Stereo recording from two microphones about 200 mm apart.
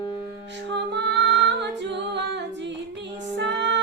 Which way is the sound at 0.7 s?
60° right (ahead or behind).